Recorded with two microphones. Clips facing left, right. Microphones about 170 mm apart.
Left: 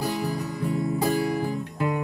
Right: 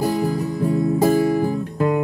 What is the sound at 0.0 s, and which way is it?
Music, 45° right (ahead or behind).